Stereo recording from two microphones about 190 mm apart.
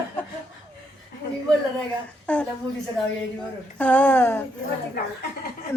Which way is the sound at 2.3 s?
5° left (ahead or behind).